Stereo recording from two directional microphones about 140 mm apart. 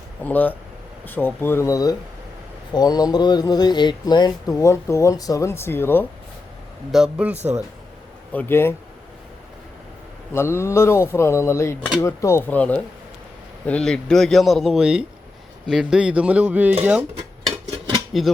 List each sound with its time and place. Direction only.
0.2 s speech: 15° left (ahead or behind)
6.9 s speech: 5° right (ahead or behind)
7.3 s speech: 55° right (ahead or behind)
8.3 s speech: 15° left (ahead or behind)
10.3 s speech: 20° left (ahead or behind); by 17.1 s 10° right (ahead or behind)
18.1 s speech: centre (ahead or behind)